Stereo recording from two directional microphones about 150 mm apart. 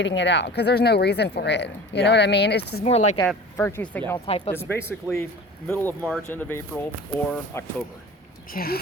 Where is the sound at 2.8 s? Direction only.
50° left (ahead or behind).